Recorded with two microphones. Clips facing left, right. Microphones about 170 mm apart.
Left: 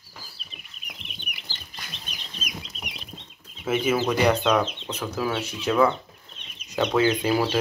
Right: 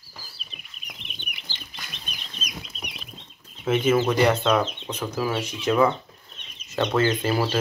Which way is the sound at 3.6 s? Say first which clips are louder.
Right 3 dB; 5° left (ahead or behind).